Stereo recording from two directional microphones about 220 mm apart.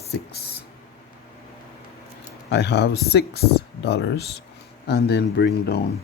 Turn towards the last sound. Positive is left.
turn(degrees=50)  # may be behind; listen again after turning